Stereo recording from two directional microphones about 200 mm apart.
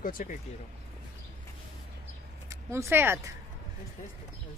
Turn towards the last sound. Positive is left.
turn(degrees=-10)  # may be behind; listen again after turning